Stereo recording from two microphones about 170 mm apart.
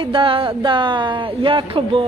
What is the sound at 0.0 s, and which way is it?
Speech, 30° right (ahead or behind).